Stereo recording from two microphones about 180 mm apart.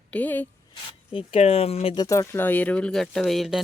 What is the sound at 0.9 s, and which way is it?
Speech, 30° left (ahead or behind).